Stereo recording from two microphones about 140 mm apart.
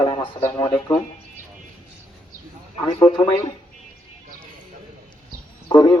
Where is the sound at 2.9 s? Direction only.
40° left (ahead or behind).